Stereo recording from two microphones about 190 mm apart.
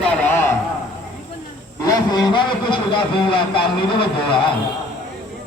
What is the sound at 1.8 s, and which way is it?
Speech, 20° left (ahead or behind).